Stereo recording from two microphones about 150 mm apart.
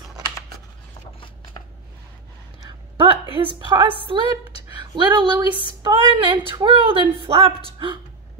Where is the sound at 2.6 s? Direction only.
35° right (ahead or behind).